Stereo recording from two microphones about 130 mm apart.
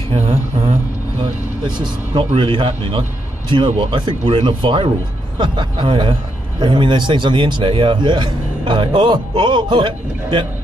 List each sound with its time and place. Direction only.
0.1 s speech: 55° right (ahead or behind)
1.8 s a man's voice: 40° right (ahead or behind)